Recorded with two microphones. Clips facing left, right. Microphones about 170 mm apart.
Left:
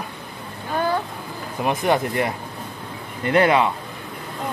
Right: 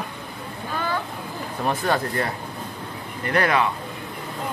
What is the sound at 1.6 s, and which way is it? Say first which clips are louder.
Speech: left 3 dB; 20° left (ahead or behind).